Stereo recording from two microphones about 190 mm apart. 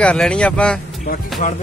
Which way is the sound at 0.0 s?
5° left (ahead or behind).